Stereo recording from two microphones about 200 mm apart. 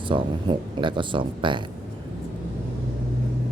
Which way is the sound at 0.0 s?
25° right (ahead or behind).